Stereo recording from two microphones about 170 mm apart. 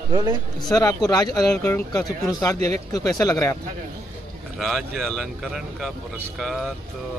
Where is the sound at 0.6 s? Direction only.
20° left (ahead or behind).